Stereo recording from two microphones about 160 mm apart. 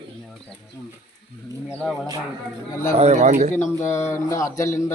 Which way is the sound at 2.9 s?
45° right (ahead or behind).